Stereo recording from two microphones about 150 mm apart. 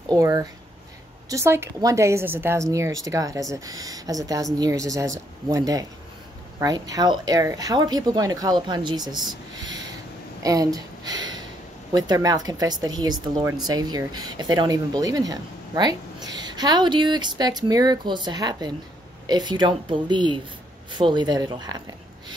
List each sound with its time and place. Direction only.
0.1 s speech: 25° right (ahead or behind)